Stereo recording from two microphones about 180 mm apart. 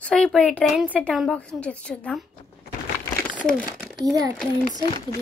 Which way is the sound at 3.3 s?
5° left (ahead or behind).